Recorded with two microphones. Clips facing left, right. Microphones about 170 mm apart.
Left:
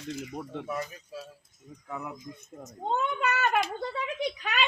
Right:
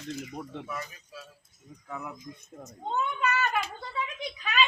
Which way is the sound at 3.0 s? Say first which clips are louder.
Right 1 dB; 60° left (ahead or behind).